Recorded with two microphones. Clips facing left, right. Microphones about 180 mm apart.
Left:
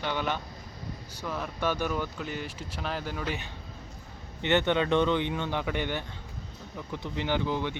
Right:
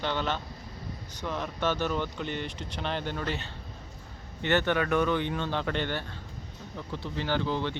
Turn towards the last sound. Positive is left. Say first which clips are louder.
# even
turn(degrees=15)  # may be behind; listen again after turning